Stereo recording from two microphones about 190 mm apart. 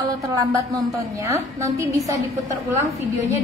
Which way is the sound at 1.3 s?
15° right (ahead or behind).